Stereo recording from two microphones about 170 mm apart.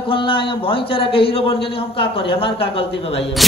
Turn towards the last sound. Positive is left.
turn(degrees=35)  # may be behind; listen again after turning